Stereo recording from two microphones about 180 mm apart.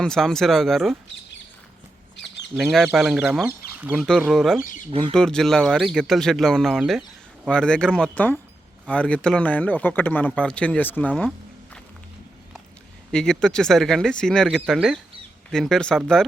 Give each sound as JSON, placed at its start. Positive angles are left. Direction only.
{"t": 0.0, "sound": "speech", "side_deg": 5}
{"t": 2.6, "sound": "speech", "side_deg": -5}
{"t": 4.9, "sound": "speech", "side_deg": -30}
{"t": 5.1, "sound": "speech", "side_deg": 5}
{"t": 13.1, "sound": "speech", "side_deg": 0}